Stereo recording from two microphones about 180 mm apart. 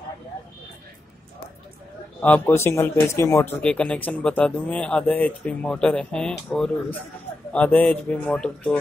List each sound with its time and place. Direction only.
2.2 s speech: 10° left (ahead or behind)